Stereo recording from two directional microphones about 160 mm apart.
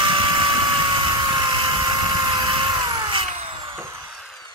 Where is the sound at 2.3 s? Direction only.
30° right (ahead or behind).